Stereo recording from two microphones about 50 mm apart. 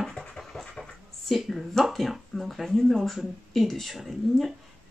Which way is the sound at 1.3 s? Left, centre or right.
Centre.